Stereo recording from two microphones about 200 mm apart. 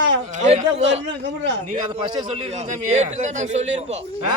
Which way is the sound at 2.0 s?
25° right (ahead or behind).